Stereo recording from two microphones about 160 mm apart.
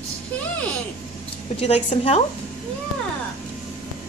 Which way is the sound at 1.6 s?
40° left (ahead or behind).